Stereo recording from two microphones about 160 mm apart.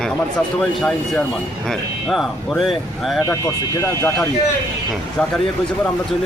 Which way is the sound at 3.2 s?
20° left (ahead or behind).